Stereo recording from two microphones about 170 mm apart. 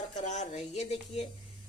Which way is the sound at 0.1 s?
45° left (ahead or behind).